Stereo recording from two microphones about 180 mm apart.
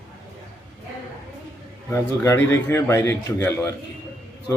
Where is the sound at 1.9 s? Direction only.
15° left (ahead or behind).